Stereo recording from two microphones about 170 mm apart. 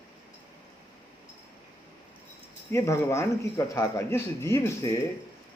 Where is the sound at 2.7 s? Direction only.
15° left (ahead or behind).